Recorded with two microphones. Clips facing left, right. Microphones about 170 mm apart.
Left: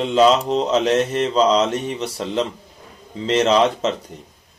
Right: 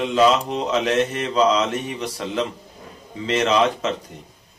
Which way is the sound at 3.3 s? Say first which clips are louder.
Left 3 dB; 30° left (ahead or behind).